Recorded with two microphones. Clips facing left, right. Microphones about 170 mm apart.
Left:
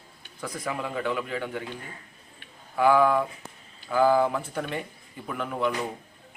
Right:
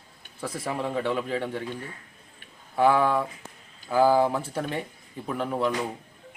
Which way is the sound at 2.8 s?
30° right (ahead or behind).